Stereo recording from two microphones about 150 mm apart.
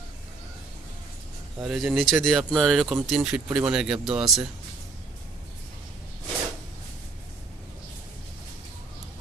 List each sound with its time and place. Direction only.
1.6 s speech: centre (ahead or behind)